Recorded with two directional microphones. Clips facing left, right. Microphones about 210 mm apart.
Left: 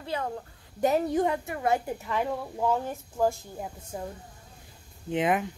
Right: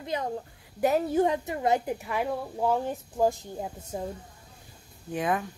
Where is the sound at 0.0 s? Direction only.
15° right (ahead or behind).